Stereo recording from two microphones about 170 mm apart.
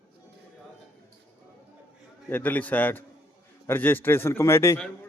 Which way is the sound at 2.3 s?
10° left (ahead or behind).